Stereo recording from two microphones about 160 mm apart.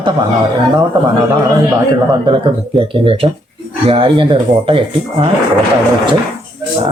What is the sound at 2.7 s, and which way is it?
A man's voice, 35° right (ahead or behind).